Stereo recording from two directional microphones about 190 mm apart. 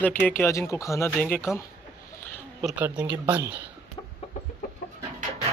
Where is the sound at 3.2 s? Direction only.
10° right (ahead or behind).